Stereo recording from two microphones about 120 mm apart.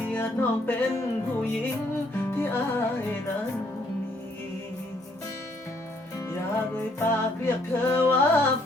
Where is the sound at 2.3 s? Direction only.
20° left (ahead or behind).